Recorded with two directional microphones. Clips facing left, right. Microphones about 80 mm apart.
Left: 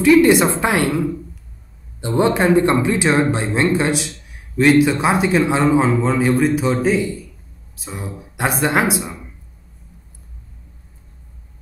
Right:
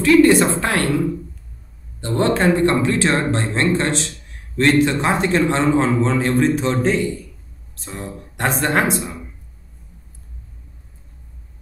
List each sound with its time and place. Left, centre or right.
0.0 s speech: centre
2.0 s speech: centre